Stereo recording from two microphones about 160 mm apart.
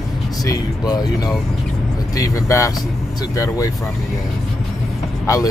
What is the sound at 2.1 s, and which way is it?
Speech, 20° left (ahead or behind).